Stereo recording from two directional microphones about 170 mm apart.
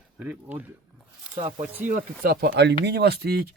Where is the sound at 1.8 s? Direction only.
55° right (ahead or behind).